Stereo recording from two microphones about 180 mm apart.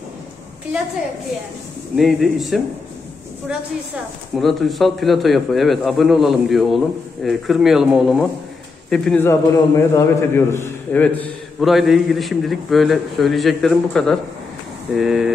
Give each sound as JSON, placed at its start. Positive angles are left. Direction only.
{"t": 2.0, "sound": "a man's voice", "side_deg": 0}
{"t": 4.4, "sound": "a man's voice", "side_deg": 0}